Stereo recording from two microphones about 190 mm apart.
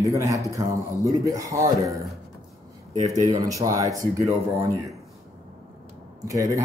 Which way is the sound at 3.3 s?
20° right (ahead or behind).